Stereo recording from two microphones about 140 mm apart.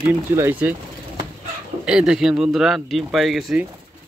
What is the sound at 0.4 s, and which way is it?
Speech, 15° right (ahead or behind).